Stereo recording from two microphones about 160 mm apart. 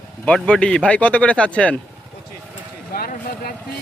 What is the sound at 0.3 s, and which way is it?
Speech, 5° left (ahead or behind).